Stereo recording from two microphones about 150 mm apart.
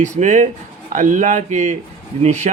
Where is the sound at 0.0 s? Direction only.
55° right (ahead or behind).